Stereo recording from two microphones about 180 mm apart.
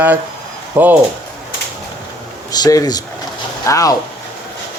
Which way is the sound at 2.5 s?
20° left (ahead or behind).